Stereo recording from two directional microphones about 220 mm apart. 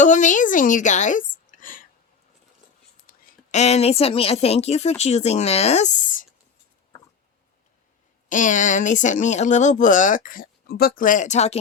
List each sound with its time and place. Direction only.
0.0 s speech: 35° left (ahead or behind)
3.1 s a woman's voice: 30° left (ahead or behind)
8.3 s speech: 35° left (ahead or behind)